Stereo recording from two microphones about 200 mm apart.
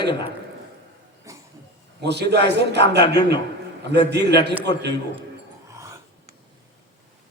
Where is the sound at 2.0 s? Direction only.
55° right (ahead or behind).